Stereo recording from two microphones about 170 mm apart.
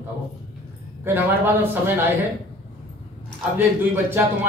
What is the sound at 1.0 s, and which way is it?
Speech, 15° right (ahead or behind).